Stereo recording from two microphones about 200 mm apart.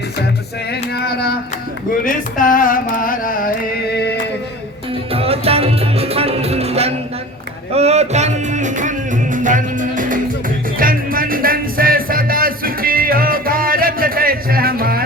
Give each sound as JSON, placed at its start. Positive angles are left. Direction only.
{"t": 0.7, "sound": "a sound", "side_deg": 50}
{"t": 2.0, "sound": "carnatic music", "side_deg": 45}
{"t": 5.1, "sound": "music", "side_deg": -30}